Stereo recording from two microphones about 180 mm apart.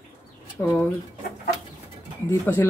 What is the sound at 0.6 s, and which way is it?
Speech, 15° left (ahead or behind).